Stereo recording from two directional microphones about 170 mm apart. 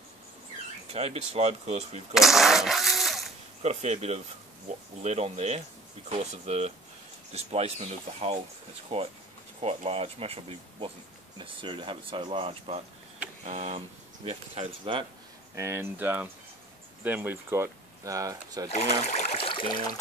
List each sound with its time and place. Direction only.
0.8 s speech: 35° right (ahead or behind)
2.1 s a sound: centre (ahead or behind)
3.6 s speech: 40° right (ahead or behind)
15.5 s speech: 15° right (ahead or behind)
18.7 s speech: 40° left (ahead or behind)